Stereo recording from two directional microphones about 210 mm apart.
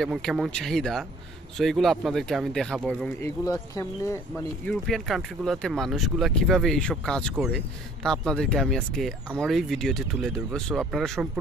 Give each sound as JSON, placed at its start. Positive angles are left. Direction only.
{"t": 0.0, "sound": "speech", "side_deg": 0}
{"t": 3.2, "sound": "speech", "side_deg": 15}
{"t": 4.6, "sound": "speech", "side_deg": 0}